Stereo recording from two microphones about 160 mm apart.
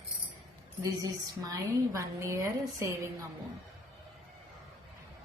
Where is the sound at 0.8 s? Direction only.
20° right (ahead or behind).